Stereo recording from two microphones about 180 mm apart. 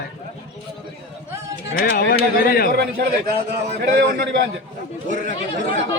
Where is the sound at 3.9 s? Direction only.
65° right (ahead or behind).